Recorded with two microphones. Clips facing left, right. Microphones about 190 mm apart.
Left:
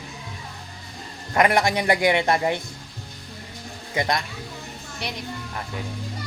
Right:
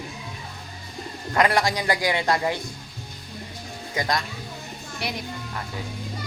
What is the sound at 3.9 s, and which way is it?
Speech, 25° left (ahead or behind).